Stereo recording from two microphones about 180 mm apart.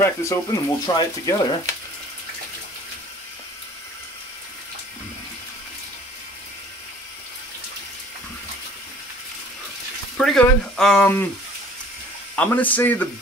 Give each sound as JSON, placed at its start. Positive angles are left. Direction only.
{"t": 0.0, "sound": "speech", "side_deg": 15}
{"t": 10.1, "sound": "speech", "side_deg": 5}
{"t": 12.4, "sound": "speech", "side_deg": 10}